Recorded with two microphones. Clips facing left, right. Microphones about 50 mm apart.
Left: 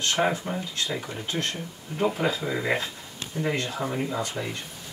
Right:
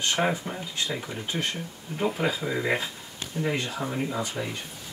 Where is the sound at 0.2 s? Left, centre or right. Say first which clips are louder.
Left 2 dB; centre.